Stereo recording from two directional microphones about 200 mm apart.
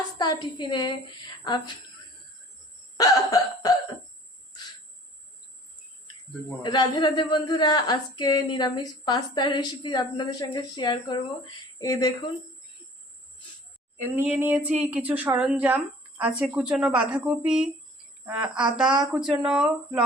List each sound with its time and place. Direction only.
0.2 s speech: 20° left (ahead or behind)
3.0 s cough: 20° left (ahead or behind)
6.6 s speech: 20° left (ahead or behind)
11.8 s cough: 15° left (ahead or behind)
14.3 s speech: 10° right (ahead or behind)